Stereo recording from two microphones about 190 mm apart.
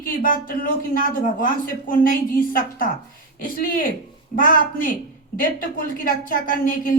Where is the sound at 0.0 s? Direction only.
50° left (ahead or behind).